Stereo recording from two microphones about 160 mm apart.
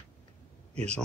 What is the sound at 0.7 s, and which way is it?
Speech, 5° left (ahead or behind).